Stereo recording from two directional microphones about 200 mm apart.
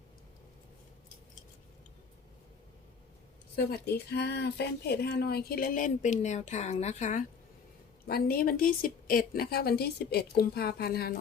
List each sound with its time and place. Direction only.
3.5 s speech: 55° left (ahead or behind); by 7.3 s 35° left (ahead or behind)
8.0 s speech: 50° left (ahead or behind)